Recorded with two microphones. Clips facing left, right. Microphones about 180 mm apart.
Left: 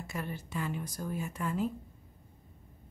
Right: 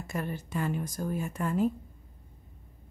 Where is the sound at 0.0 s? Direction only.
45° right (ahead or behind).